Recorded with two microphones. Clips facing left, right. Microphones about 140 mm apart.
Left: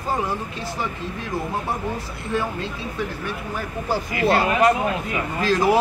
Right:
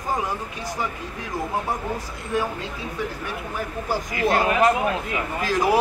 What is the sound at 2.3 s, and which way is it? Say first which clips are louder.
Speech: even; 15° right (ahead or behind).